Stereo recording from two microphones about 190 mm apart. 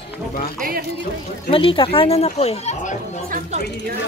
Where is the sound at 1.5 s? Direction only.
25° left (ahead or behind).